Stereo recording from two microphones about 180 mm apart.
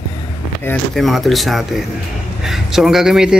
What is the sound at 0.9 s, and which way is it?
Speech, centre (ahead or behind).